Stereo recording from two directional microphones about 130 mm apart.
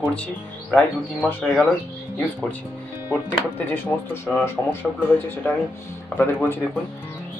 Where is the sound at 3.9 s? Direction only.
20° left (ahead or behind).